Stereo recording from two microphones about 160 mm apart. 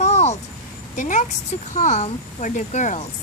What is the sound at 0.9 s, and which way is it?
A woman's voice, 50° left (ahead or behind).